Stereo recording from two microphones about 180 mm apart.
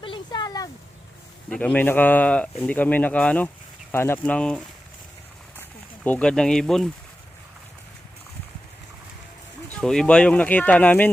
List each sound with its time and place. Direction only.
0.0 s a sound: 25° left (ahead or behind)
1.5 s speech: 5° left (ahead or behind)
6.0 s speech: 5° left (ahead or behind)
9.8 s speech: 5° left (ahead or behind)